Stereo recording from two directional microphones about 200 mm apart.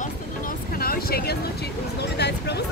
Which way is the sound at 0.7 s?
50° left (ahead or behind).